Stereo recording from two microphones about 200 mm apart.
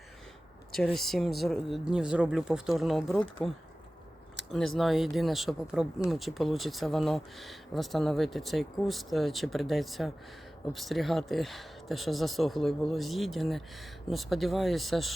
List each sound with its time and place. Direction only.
0.9 s speech: centre (ahead or behind)
4.5 s speech: centre (ahead or behind)